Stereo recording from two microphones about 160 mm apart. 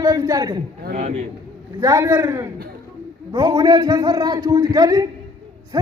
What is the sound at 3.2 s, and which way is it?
A man's voice, 25° right (ahead or behind).